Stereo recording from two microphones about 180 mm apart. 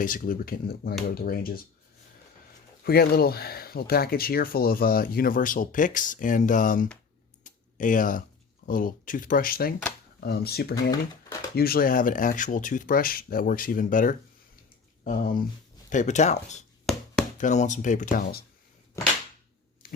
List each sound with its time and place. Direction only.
0.0 s speech: 50° left (ahead or behind)
2.8 s speech: 60° left (ahead or behind)
7.4 s a sound: 45° left (ahead or behind)
8.6 s speech: 50° left (ahead or behind)
16.9 s chop: centre (ahead or behind)
17.3 s speech: 40° left (ahead or behind)
19.8 s squish: 55° left (ahead or behind)